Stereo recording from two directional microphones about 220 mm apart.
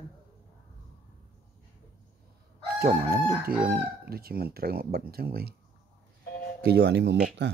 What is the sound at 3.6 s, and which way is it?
Speech, 45° right (ahead or behind).